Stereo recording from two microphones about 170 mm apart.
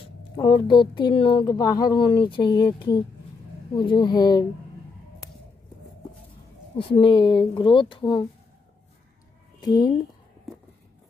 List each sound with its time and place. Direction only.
0.0 s speech: 30° left (ahead or behind)
6.8 s speech: 30° left (ahead or behind)
9.6 s speech: 25° left (ahead or behind)